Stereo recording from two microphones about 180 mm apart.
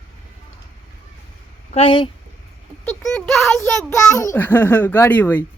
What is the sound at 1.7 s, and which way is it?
Speech, 30° left (ahead or behind).